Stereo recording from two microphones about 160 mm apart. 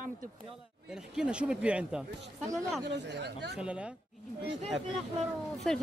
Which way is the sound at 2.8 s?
90° right.